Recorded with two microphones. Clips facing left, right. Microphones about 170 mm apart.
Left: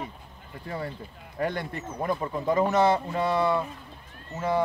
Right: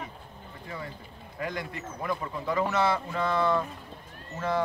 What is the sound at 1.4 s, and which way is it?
Speech, 35° left (ahead or behind).